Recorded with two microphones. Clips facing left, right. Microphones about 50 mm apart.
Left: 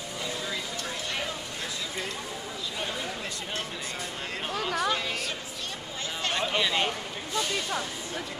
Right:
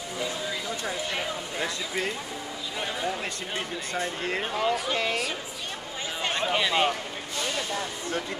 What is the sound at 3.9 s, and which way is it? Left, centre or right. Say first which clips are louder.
Speech: right 10 dB; right.